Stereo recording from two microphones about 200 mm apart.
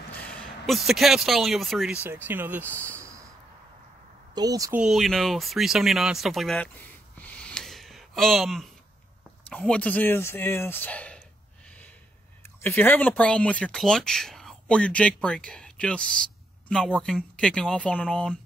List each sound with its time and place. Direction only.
0.1 s speech: 5° left (ahead or behind); by 3.3 s 15° right (ahead or behind)
4.4 s speech: 20° right (ahead or behind)
4.8 s speech: centre (ahead or behind)
12.4 s speech: 10° left (ahead or behind)